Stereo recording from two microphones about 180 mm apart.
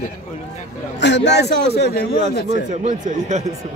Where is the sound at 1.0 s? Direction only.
75° left (ahead or behind).